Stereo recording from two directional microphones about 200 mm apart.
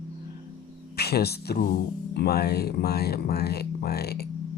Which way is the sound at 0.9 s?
55° left (ahead or behind).